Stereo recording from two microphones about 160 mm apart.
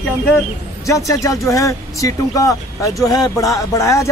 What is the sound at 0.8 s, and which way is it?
Speech, 20° left (ahead or behind).